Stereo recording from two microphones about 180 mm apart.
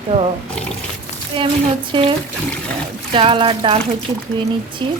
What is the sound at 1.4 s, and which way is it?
Speech, 30° right (ahead or behind).